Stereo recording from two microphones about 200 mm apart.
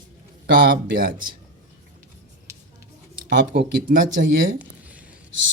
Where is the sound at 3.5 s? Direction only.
45° right (ahead or behind).